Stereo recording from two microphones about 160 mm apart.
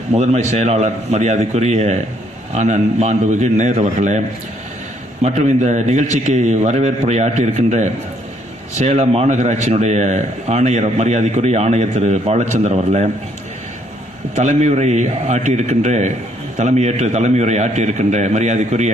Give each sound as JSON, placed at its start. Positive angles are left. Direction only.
{"t": 0.1, "sound": "speech", "side_deg": -45}
{"t": 5.2, "sound": "speech", "side_deg": -45}
{"t": 14.3, "sound": "speech", "side_deg": -45}